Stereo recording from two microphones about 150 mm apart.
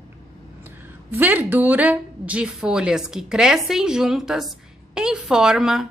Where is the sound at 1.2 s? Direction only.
10° right (ahead or behind).